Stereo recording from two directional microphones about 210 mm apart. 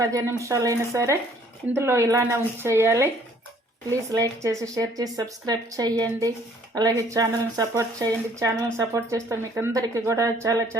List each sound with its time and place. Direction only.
0.0 s speech: 15° right (ahead or behind)
4.1 s speech: 15° right (ahead or behind)